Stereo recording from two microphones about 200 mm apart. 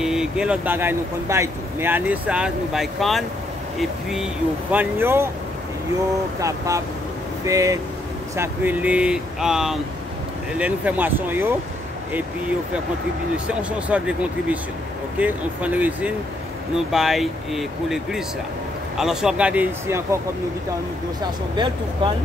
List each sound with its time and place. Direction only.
0.0 s speech: centre (ahead or behind)
6.4 s speech: 15° right (ahead or behind)
13.6 s speech: 5° right (ahead or behind)
21.2 s speech: 25° right (ahead or behind)